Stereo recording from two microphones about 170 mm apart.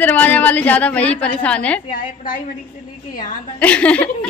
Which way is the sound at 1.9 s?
55° left (ahead or behind).